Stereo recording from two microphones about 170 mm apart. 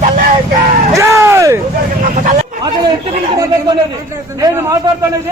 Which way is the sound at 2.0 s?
50° right (ahead or behind).